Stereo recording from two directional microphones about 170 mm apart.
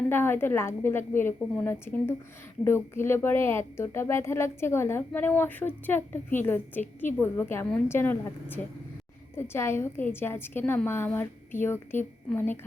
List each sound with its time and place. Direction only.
0.1 s a woman's voice: 15° left (ahead or behind)